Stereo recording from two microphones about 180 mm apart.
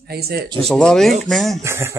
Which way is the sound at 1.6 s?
15° right (ahead or behind).